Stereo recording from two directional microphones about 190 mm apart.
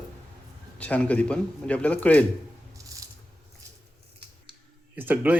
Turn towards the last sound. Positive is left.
turn(degrees=-10)  # may be behind; listen again after turning